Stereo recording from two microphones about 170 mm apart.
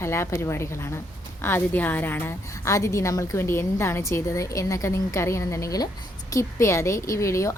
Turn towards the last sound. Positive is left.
turn(degrees=15)  # may be behind; listen again after turning